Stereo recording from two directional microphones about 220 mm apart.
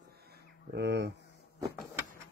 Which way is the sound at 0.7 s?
50° right (ahead or behind).